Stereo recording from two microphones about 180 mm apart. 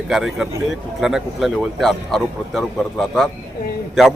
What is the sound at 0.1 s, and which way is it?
Speech, centre (ahead or behind).